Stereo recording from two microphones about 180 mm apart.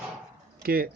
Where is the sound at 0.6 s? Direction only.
55° right (ahead or behind).